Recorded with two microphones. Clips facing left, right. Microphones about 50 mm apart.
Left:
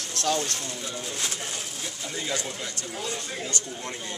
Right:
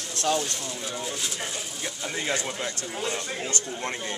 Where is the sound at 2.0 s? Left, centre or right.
Right.